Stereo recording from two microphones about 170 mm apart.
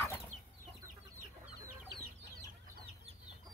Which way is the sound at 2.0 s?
70° right (ahead or behind).